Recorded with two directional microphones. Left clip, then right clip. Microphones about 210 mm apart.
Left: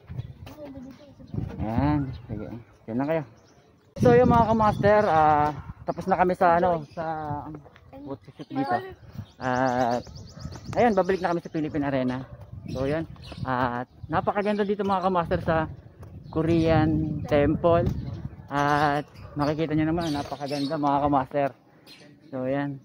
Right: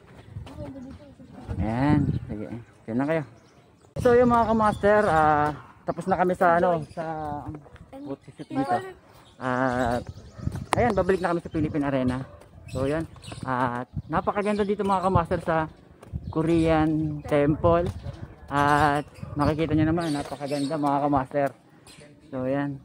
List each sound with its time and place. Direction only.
1.6 s speech: 5° right (ahead or behind)
4.0 s speech: 10° left (ahead or behind)
7.2 s speech: 25° left (ahead or behind)
9.4 s speech: 10° left (ahead or behind)
10.8 s speech: 50° left (ahead or behind)
11.1 s speech: centre (ahead or behind)
13.5 s speech: 20° left (ahead or behind)